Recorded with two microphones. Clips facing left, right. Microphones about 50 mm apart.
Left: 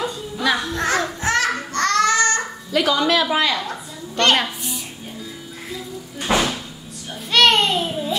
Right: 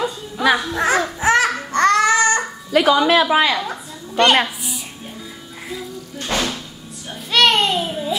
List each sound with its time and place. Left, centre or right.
0.6 s a child's voice: centre
1.7 s babbling: centre
2.7 s a woman's voice: centre
6.1 s a sound: centre